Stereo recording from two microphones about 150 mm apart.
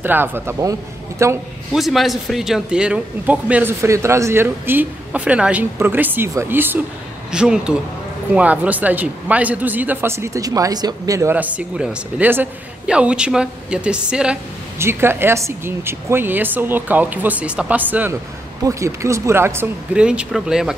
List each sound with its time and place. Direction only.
0.0 s a man's voice: 15° right (ahead or behind)
1.7 s speech: centre (ahead or behind)